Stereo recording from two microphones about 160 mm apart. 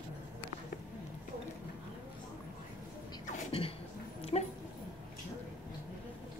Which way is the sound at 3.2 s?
40° left (ahead or behind).